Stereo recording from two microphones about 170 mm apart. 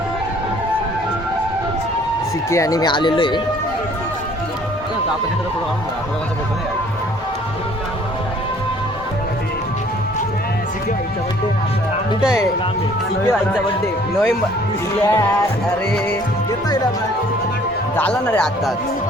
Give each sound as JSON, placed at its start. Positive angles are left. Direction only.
{"t": 2.5, "sound": "speech", "side_deg": 20}
{"t": 15.0, "sound": "speech", "side_deg": 15}
{"t": 17.9, "sound": "speech", "side_deg": 10}